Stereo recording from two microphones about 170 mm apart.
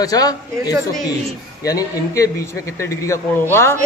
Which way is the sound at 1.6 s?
20° left (ahead or behind).